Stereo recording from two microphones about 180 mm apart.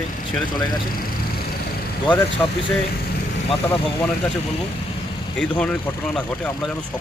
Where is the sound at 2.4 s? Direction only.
10° left (ahead or behind).